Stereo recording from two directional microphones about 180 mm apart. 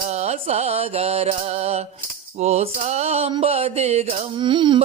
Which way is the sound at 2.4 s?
35° right (ahead or behind).